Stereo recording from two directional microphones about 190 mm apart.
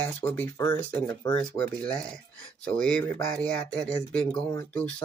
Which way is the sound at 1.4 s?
5° left (ahead or behind).